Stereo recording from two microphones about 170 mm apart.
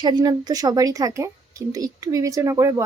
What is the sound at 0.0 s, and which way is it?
A woman's voice, 25° right (ahead or behind).